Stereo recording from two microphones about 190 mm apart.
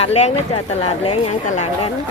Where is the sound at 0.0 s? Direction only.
35° left (ahead or behind).